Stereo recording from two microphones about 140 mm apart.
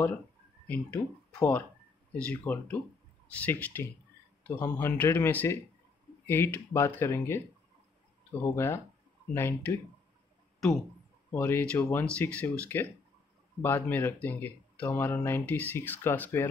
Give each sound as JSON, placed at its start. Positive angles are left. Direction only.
{"t": 0.7, "sound": "speech", "side_deg": 10}
{"t": 8.5, "sound": "speech", "side_deg": 20}
{"t": 11.3, "sound": "speech", "side_deg": 15}